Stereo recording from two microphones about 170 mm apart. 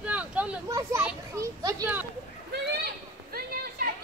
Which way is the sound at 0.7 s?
20° right (ahead or behind).